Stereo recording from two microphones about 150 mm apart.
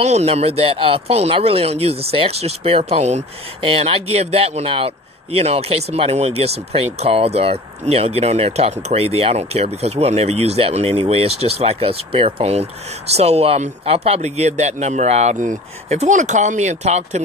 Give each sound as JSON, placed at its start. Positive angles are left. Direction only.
{"t": 0.0, "sound": "speech", "side_deg": -45}